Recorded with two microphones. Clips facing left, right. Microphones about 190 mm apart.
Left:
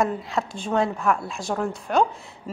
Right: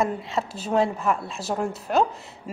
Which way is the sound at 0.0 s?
Centre (ahead or behind).